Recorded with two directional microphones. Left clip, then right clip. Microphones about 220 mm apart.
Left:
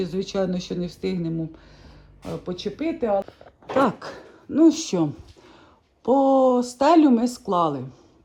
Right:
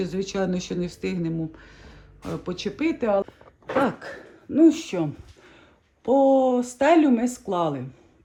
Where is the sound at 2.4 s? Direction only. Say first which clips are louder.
Right 1 dB; 5° right (ahead or behind).